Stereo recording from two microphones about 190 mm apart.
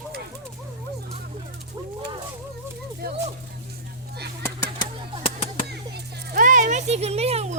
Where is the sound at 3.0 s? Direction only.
55° right (ahead or behind).